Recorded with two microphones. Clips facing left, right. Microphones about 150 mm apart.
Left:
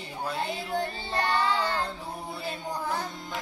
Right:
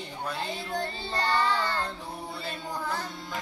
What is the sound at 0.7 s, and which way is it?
Child singing, 20° left (ahead or behind).